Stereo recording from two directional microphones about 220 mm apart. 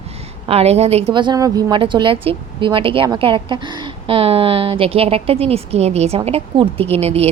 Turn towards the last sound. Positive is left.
turn(degrees=-30)  # may be behind; listen again after turning